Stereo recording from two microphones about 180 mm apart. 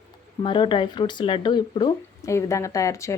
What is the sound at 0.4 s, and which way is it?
Speech, 25° left (ahead or behind).